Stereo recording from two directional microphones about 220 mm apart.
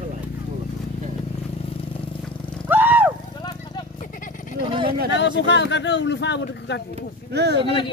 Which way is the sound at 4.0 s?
35° left (ahead or behind).